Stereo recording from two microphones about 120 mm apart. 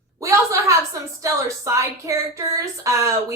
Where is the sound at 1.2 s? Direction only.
25° right (ahead or behind).